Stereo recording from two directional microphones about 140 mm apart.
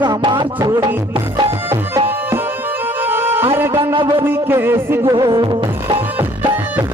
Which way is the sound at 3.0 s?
15° right (ahead or behind).